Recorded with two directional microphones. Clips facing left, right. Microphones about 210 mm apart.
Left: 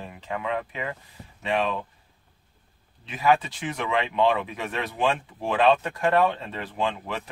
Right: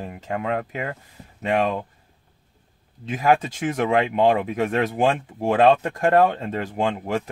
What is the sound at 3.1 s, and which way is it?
Speech, 45° right (ahead or behind).